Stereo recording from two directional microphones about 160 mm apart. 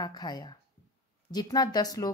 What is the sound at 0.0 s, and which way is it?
A woman's voice, 25° left (ahead or behind).